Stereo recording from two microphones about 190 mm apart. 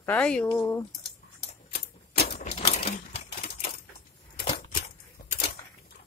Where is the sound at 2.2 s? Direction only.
35° left (ahead or behind).